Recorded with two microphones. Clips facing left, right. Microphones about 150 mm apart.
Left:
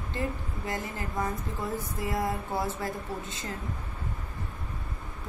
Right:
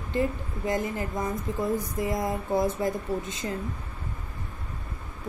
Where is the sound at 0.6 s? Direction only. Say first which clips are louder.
Right 7 dB; 15° right (ahead or behind).